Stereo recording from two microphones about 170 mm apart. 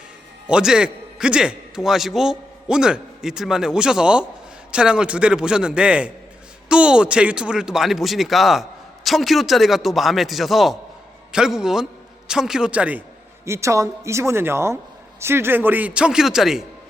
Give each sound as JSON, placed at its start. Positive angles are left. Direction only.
{"t": 0.4, "sound": "a man's voice", "side_deg": -5}